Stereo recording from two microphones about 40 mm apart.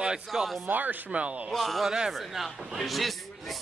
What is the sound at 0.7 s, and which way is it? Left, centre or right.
Speech, right.